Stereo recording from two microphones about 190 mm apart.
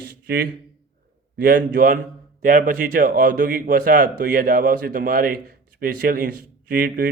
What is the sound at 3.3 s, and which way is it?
Speech, 60° right (ahead or behind).